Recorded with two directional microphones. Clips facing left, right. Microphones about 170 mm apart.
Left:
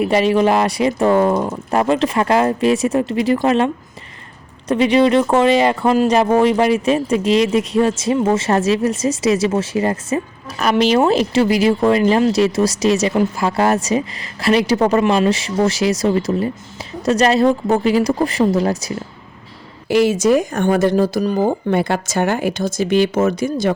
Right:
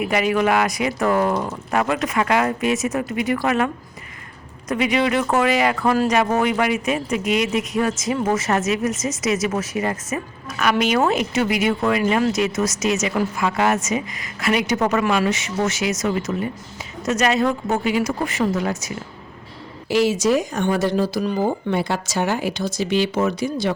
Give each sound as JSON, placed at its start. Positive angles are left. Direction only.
{"t": 0.0, "sound": "speech", "side_deg": 30}
{"t": 4.7, "sound": "speech", "side_deg": 30}
{"t": 19.9, "sound": "speech", "side_deg": 55}